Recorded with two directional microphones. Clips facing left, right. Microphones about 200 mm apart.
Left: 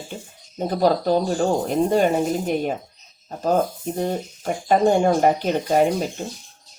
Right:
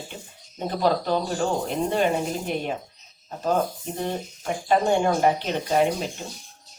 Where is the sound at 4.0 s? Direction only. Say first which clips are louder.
Left 4 dB; 40° left (ahead or behind).